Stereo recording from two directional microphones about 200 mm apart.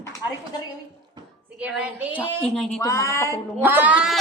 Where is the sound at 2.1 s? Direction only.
5° left (ahead or behind).